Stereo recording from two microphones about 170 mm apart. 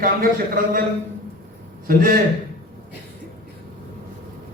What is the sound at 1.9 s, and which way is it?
Speech, 60° right (ahead or behind).